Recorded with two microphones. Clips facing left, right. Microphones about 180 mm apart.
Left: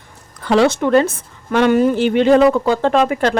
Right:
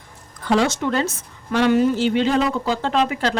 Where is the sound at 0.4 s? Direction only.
70° left (ahead or behind).